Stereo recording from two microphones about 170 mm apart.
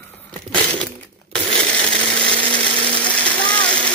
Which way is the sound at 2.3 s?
30° right (ahead or behind).